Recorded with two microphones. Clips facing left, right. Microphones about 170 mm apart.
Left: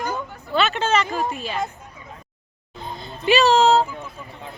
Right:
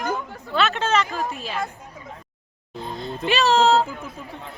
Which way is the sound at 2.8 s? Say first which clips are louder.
Left 4 dB; centre (ahead or behind).